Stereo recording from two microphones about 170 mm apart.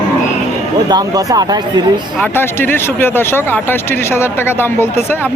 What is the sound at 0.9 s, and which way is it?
Speech, 25° right (ahead or behind).